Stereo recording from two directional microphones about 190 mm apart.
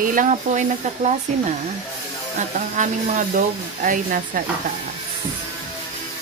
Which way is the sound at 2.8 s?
45° right (ahead or behind).